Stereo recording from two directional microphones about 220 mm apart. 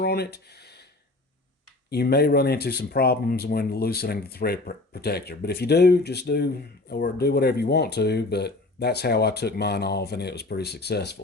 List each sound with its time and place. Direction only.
0.0 s speech: 45° left (ahead or behind)
1.9 s speech: 45° left (ahead or behind)